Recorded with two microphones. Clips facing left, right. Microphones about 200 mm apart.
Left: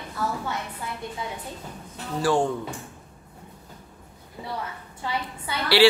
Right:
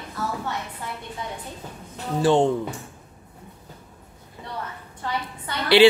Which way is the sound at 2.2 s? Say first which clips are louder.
Right 4 dB; 20° right (ahead or behind).